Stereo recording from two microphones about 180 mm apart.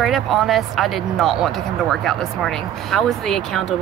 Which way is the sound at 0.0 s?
Centre (ahead or behind).